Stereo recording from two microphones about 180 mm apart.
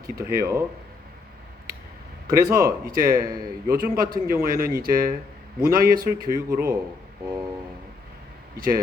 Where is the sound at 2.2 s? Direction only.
15° right (ahead or behind).